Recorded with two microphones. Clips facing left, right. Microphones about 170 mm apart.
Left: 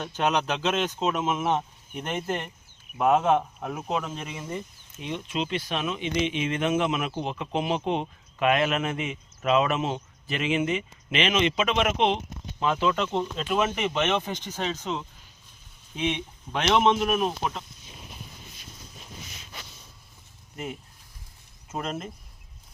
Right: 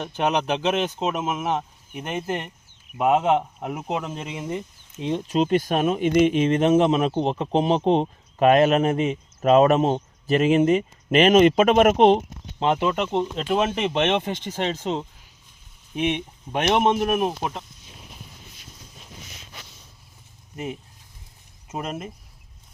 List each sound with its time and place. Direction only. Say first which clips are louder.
0.0 s speech: right 2 dB; 15° right (ahead or behind)
1.9 s speech: right 2 dB; 15° right (ahead or behind); by 12.2 s 40° right (ahead or behind)
12.8 s speech: right 3 dB; 20° right (ahead or behind)
13.5 s speech: right 3 dB; 30° right (ahead or behind)
16.0 s speech: right 4 dB; 55° right (ahead or behind)
17.2 s speech: right 2 dB; 20° right (ahead or behind)
21.7 s speech: right 1 dB; 15° right (ahead or behind)